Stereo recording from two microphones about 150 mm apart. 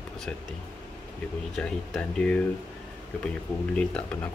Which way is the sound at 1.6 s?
5° left (ahead or behind).